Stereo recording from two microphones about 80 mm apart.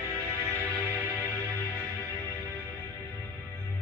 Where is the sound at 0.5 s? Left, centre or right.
Left.